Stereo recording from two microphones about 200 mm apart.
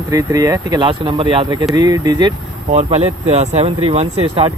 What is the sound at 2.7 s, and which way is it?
Speech, 30° right (ahead or behind).